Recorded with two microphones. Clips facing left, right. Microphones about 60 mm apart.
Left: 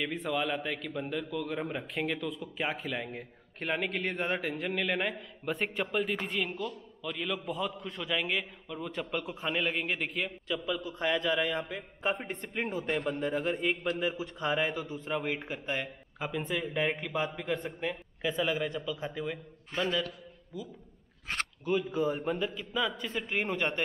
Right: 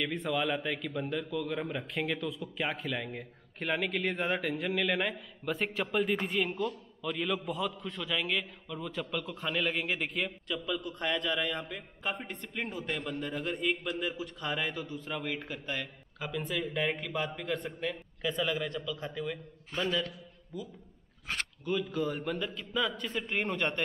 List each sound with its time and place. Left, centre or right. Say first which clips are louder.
0.0 s a man's voice: even; centre
10.7 s a man's voice: left 2 dB; centre